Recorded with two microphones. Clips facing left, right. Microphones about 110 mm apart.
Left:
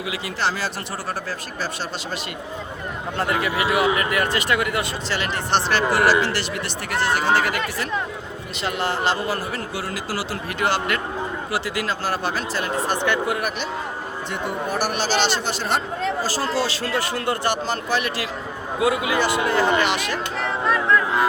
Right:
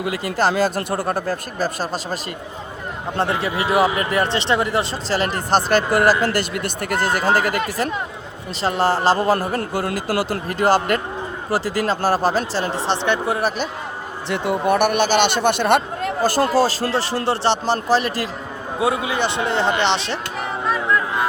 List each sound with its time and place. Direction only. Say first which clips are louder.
0.0 s a man's voice: right 5 dB; 45° right (ahead or behind)
3.2 s a man's voice: right 1 dB; 30° right (ahead or behind)
14.3 s speech: right 8 dB; 90° right; by 16.5 s 55° right (ahead or behind)
16.6 s a man's voice: right 5 dB; 40° right (ahead or behind)
18.8 s speech: even; 25° right (ahead or behind)